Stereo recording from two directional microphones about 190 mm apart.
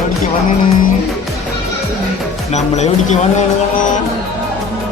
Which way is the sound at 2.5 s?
35° left (ahead or behind).